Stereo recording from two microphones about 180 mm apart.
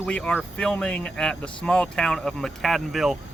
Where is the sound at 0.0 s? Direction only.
5° left (ahead or behind).